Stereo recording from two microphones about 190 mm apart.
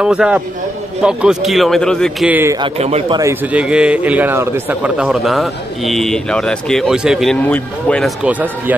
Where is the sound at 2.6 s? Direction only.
30° right (ahead or behind).